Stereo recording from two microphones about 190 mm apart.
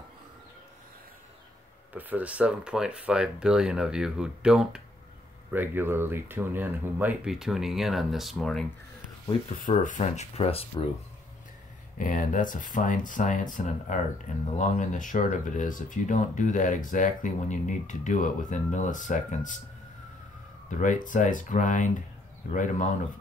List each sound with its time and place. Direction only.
2.0 s speech: 10° right (ahead or behind)
9.6 s speech: 40° left (ahead or behind)
12.0 s speech: 45° left (ahead or behind)
20.8 s speech: 40° left (ahead or behind)